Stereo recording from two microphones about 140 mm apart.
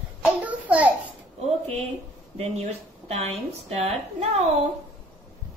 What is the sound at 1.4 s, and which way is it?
Speech, 50° right (ahead or behind).